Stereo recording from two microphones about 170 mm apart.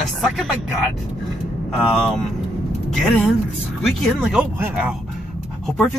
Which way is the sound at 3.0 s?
Centre (ahead or behind).